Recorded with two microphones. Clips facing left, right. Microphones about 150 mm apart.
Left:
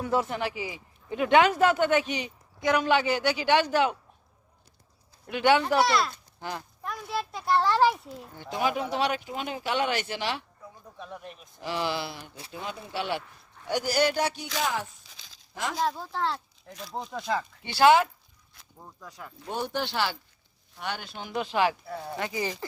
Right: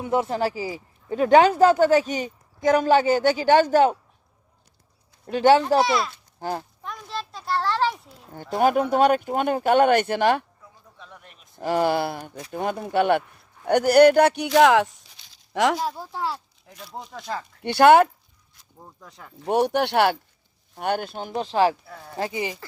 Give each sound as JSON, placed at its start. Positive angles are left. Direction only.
{"t": 0.0, "sound": "speech", "side_deg": -25}
{"t": 0.3, "sound": "speech", "side_deg": -40}
{"t": 5.2, "sound": "speech", "side_deg": -40}
{"t": 5.8, "sound": "a child's voice", "side_deg": 0}
{"t": 6.4, "sound": "speech", "side_deg": -45}
{"t": 6.8, "sound": "a sound", "side_deg": 5}
{"t": 8.3, "sound": "speech", "side_deg": -45}
{"t": 10.9, "sound": "a sound", "side_deg": 15}
{"t": 11.5, "sound": "speech", "side_deg": -50}
{"t": 15.8, "sound": "a child's voice", "side_deg": -10}
{"t": 17.6, "sound": "speech", "side_deg": -60}
{"t": 18.9, "sound": "speech", "side_deg": -25}
{"t": 19.5, "sound": "speech", "side_deg": -70}
{"t": 20.7, "sound": "speech", "side_deg": -50}